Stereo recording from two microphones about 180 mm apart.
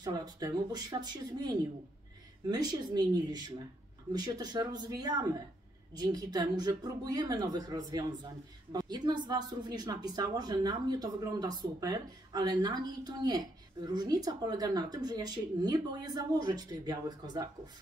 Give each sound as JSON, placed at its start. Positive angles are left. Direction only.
{"t": 0.0, "sound": "a woman's voice", "side_deg": -20}